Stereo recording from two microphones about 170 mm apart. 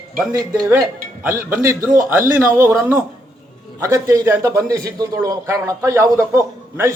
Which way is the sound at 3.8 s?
20° right (ahead or behind).